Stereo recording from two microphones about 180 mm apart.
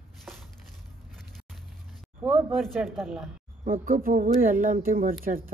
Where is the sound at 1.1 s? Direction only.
Centre (ahead or behind).